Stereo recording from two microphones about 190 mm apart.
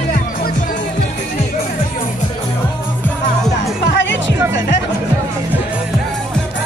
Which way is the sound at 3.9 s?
70° left (ahead or behind).